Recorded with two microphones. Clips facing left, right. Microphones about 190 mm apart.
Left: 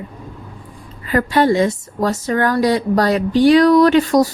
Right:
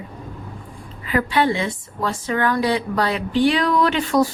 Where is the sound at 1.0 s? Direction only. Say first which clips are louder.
Left 4 dB; 40° left (ahead or behind).